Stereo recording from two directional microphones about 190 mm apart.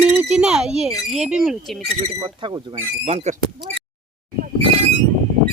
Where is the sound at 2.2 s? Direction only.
25° right (ahead or behind).